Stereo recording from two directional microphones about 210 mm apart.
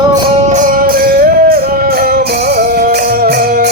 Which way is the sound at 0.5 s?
40° right (ahead or behind).